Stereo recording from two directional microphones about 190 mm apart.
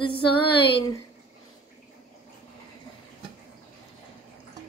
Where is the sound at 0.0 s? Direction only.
25° left (ahead or behind).